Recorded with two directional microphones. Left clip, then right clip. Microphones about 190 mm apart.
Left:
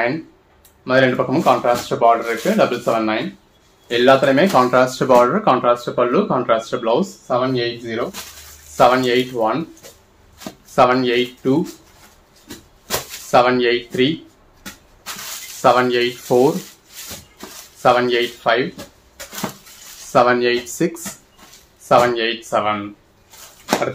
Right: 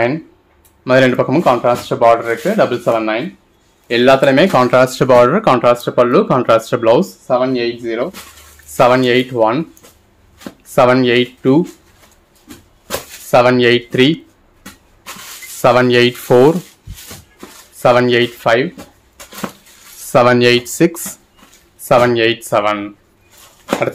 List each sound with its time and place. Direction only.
0.8 s speech: 55° right (ahead or behind)
10.7 s speech: 60° right (ahead or behind)
13.3 s speech: 55° right (ahead or behind)
15.6 s speech: 60° right (ahead or behind)
17.8 s speech: 55° right (ahead or behind)
20.1 s speech: 55° right (ahead or behind)
21.8 s speech: 55° right (ahead or behind)